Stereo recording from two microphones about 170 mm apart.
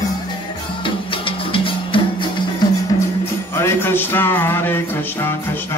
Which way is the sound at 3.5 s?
15° left (ahead or behind).